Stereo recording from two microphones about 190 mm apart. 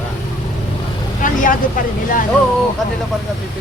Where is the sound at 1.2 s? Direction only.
45° left (ahead or behind).